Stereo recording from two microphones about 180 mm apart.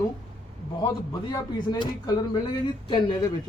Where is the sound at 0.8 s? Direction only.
25° left (ahead or behind).